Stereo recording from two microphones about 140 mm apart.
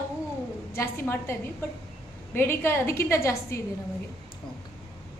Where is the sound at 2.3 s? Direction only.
15° left (ahead or behind).